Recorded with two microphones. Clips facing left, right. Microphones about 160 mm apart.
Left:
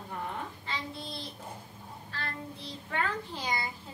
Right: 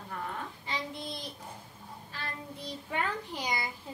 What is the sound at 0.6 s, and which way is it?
Speech, 15° right (ahead or behind).